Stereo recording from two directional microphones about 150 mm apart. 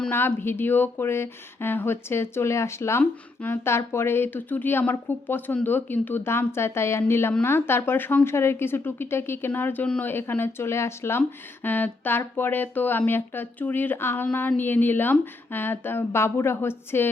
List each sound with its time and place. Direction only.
0.1 s speech: 15° left (ahead or behind)